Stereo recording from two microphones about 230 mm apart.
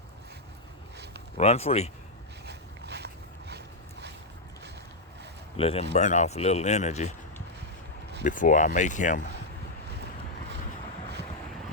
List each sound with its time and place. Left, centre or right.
1.4 s speech: left
2.5 s a sound: right
5.5 s speech: left
8.2 s speech: left